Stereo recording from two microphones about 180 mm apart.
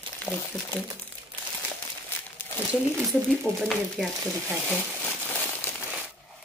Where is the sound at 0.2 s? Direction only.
10° left (ahead or behind).